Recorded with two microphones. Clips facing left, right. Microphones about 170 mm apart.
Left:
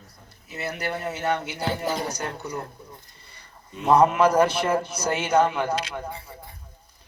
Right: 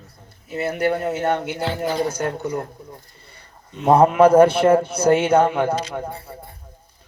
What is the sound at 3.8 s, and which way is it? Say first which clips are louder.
A man's voice: right 5 dB; 55° right (ahead or behind).